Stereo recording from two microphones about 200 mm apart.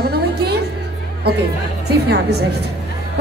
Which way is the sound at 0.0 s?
55° right (ahead or behind).